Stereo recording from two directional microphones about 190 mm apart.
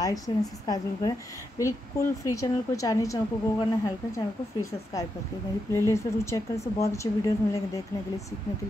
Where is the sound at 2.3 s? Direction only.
15° left (ahead or behind).